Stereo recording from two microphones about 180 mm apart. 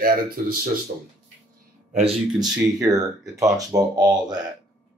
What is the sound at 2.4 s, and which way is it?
Speech, 20° right (ahead or behind).